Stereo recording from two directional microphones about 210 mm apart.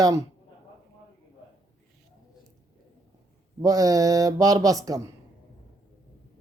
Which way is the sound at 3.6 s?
15° right (ahead or behind).